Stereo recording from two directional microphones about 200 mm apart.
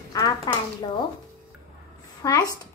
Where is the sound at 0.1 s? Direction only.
20° left (ahead or behind).